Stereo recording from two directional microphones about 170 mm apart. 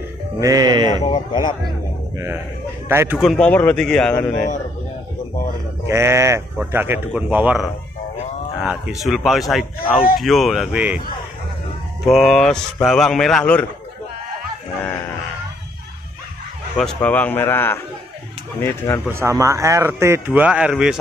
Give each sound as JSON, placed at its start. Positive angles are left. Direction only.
{"t": 0.4, "sound": "speech", "side_deg": -20}
{"t": 1.1, "sound": "speech", "side_deg": 25}
{"t": 2.1, "sound": "speech", "side_deg": -15}
{"t": 3.2, "sound": "speech", "side_deg": 0}
{"t": 5.9, "sound": "speech", "side_deg": -15}
{"t": 12.0, "sound": "speech", "side_deg": 0}
{"t": 16.7, "sound": "a man's voice", "side_deg": 5}
{"t": 19.1, "sound": "speech", "side_deg": -15}